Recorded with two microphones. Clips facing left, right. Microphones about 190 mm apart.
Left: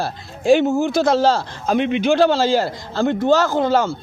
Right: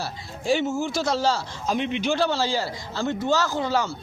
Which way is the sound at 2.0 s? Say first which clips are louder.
Left 9 dB; 75° left (ahead or behind).